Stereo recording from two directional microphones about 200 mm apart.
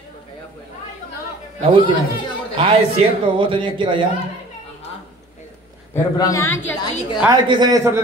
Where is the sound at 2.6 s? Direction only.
25° right (ahead or behind).